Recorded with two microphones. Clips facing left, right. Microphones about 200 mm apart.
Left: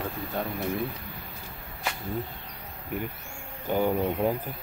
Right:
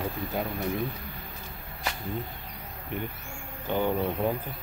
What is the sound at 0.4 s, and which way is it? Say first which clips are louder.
Speech: even; 5° right (ahead or behind).